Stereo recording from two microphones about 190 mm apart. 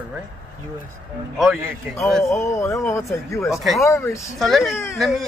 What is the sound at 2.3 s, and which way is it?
Speech, 15° left (ahead or behind).